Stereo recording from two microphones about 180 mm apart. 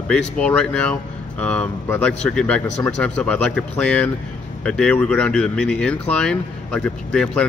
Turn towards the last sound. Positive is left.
turn(degrees=5)  # may be behind; listen again after turning